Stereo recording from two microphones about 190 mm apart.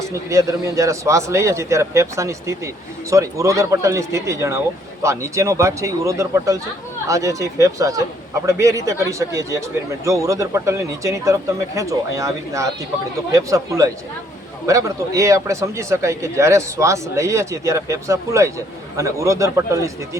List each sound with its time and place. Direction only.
0.1 s speech: 15° right (ahead or behind)